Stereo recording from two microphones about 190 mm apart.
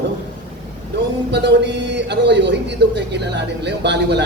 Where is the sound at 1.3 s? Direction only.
65° right (ahead or behind).